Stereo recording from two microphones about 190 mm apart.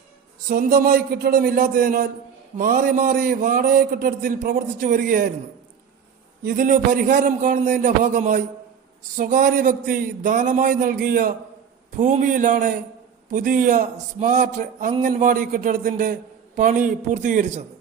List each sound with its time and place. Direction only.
0.4 s a man's voice: 50° right (ahead or behind)
6.4 s a man's voice: 50° right (ahead or behind)